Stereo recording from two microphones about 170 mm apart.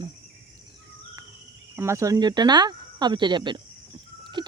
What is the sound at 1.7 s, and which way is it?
Speech, 15° right (ahead or behind).